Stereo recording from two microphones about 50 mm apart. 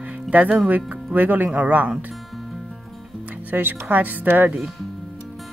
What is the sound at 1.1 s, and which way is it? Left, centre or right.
Speech, right.